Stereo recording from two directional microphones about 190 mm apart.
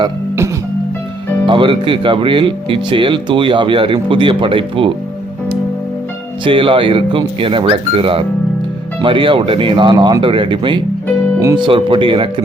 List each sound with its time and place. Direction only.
1.5 s speech: 25° right (ahead or behind)
6.4 s speech: 25° right (ahead or behind)